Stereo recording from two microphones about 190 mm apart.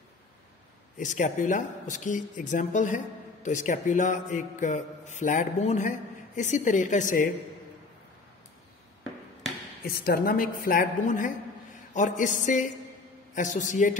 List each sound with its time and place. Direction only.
0.9 s a man's voice: 40° left (ahead or behind)
9.8 s a woman's voice: 50° left (ahead or behind)